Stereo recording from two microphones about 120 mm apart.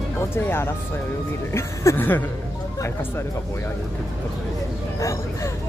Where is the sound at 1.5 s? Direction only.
20° left (ahead or behind).